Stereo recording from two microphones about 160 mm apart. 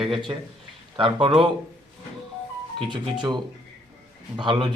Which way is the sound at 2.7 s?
30° right (ahead or behind).